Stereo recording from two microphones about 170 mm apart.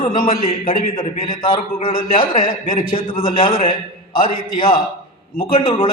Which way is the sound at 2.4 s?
55° left (ahead or behind).